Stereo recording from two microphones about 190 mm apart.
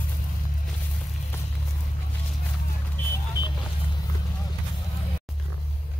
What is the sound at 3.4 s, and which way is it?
Vehicle, 20° left (ahead or behind).